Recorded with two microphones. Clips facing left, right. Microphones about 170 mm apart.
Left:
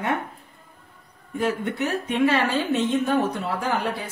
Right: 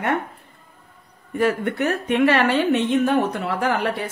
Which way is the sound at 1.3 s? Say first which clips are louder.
Right 4 dB; 60° right (ahead or behind).